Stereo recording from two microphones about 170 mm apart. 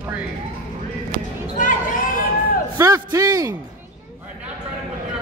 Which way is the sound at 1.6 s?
50° left (ahead or behind).